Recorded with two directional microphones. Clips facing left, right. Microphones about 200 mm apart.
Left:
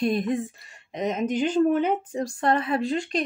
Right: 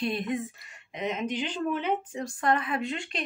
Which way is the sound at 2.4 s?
30° left (ahead or behind).